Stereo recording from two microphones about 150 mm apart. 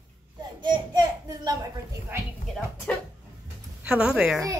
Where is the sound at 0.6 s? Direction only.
30° right (ahead or behind).